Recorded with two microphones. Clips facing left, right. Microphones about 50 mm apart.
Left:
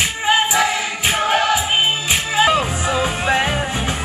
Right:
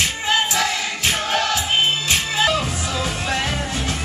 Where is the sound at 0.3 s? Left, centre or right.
Centre.